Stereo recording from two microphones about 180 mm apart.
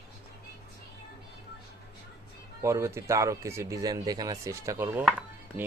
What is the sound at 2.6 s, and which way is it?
Speech, 15° right (ahead or behind).